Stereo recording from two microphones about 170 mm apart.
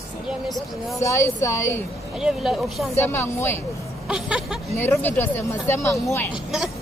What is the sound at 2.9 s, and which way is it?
Speech, 15° left (ahead or behind).